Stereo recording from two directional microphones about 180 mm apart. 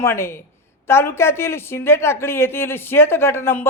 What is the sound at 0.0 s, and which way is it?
A man's voice, 15° left (ahead or behind).